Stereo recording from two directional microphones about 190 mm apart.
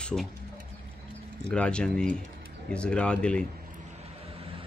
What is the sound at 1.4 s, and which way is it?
Speech, 5° left (ahead or behind).